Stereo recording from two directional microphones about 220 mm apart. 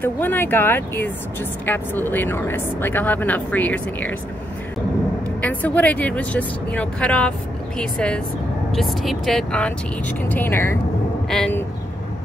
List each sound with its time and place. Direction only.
0.0 s speech: 10° left (ahead or behind)
5.4 s speech: 5° left (ahead or behind)